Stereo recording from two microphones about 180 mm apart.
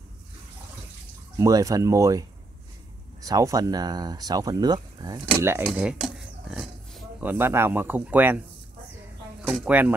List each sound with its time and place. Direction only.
1.4 s speech: 20° right (ahead or behind)
5.7 s speech: 5° right (ahead or behind)
9.7 s speech: 10° right (ahead or behind)